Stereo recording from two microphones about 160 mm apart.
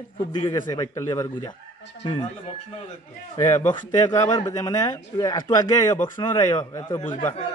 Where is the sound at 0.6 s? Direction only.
20° left (ahead or behind).